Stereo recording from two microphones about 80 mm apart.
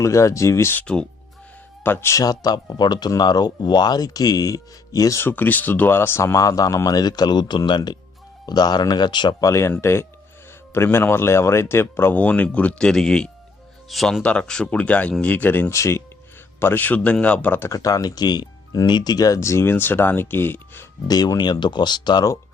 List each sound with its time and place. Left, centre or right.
0.0 s speech: left
0.8 s speech: centre
1.8 s speech: left
2.1 s speech: left
5.2 s speech: left
9.4 s speech: left; by 14.2 s centre
14.2 s speech: centre
15.7 s speech: left; by 17.6 s centre
17.7 s speech: left
21.1 s speech: left